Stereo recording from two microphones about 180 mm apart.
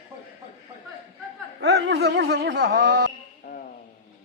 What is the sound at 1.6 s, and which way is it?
Speech, 70° right (ahead or behind).